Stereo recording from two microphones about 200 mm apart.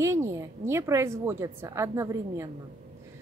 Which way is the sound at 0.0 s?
15° right (ahead or behind).